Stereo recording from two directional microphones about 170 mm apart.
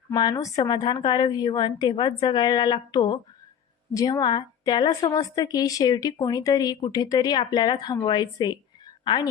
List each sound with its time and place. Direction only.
0.1 s a woman's voice: 20° left (ahead or behind)